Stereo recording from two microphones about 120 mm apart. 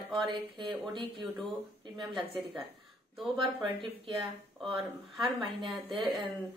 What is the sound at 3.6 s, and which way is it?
Speech, 45° right (ahead or behind).